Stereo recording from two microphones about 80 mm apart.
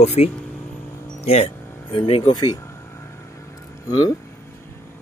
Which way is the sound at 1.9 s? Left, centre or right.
Left.